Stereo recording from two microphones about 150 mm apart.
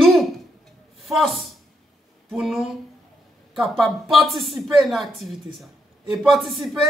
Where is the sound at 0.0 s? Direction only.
Centre (ahead or behind).